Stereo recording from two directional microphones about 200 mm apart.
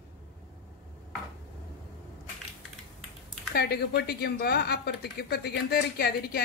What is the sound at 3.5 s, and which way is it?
A woman's voice, 50° left (ahead or behind).